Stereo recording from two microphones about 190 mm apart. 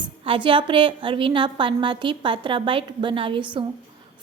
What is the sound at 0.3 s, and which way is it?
A woman's voice, 25° right (ahead or behind).